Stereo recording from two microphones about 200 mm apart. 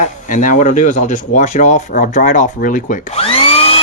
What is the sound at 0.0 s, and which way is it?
Speech, 40° left (ahead or behind).